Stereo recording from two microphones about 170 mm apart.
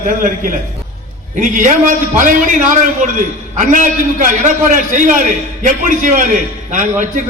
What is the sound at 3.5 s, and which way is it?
A man's voice, 50° right (ahead or behind).